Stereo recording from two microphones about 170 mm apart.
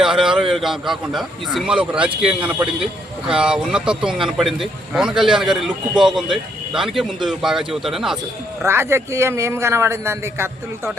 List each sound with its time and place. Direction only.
0.0 s a sound: 5° right (ahead or behind)
0.5 s speech: centre (ahead or behind)
8.6 s a man's voice: 15° right (ahead or behind)